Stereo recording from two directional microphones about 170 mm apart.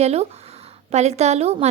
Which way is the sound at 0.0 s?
40° right (ahead or behind).